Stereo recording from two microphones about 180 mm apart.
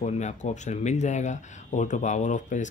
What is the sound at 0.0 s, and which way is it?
Speech, 40° left (ahead or behind).